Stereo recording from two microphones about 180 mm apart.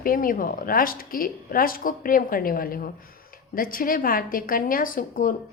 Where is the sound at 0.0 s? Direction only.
50° left (ahead or behind).